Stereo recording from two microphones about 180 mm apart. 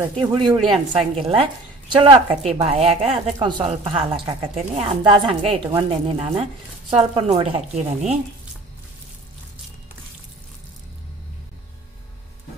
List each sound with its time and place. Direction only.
0.2 s a woman's voice: 25° right (ahead or behind)